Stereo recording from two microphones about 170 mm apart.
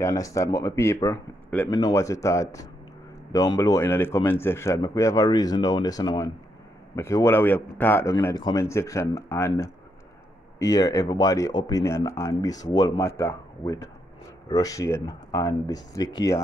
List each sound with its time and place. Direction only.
0.0 s speech: 20° left (ahead or behind)